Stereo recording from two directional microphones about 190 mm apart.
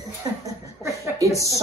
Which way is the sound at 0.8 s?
15° right (ahead or behind).